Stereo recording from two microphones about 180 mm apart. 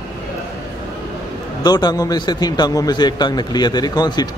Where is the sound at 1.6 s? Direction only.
25° left (ahead or behind).